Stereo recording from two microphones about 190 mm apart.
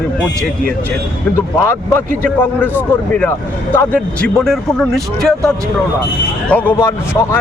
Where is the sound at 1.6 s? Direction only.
15° left (ahead or behind).